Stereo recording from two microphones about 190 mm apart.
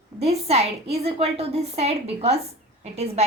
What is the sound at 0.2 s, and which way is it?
A woman's voice, 35° right (ahead or behind).